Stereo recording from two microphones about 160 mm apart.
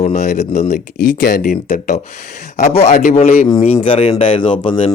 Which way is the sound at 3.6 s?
35° left (ahead or behind).